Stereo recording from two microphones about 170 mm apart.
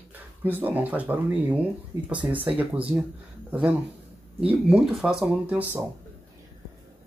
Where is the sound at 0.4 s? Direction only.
10° right (ahead or behind).